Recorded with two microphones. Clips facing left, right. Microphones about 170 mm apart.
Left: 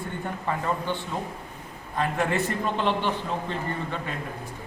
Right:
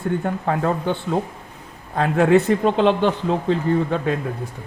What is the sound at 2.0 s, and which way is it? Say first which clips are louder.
Speech: right 10 dB; 90° right.